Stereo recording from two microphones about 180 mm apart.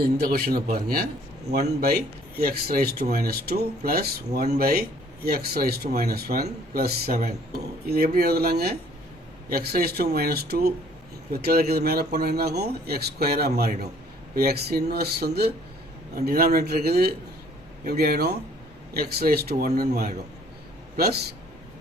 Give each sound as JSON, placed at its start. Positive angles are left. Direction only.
{"t": 0.2, "sound": "speech", "side_deg": -60}